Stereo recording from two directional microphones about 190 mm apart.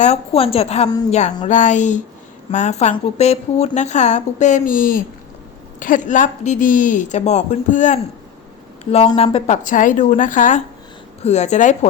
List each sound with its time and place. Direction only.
0.0 s a woman's voice: 35° left (ahead or behind)